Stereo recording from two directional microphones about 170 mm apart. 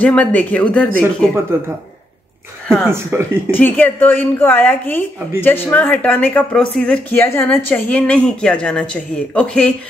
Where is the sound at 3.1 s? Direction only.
15° right (ahead or behind).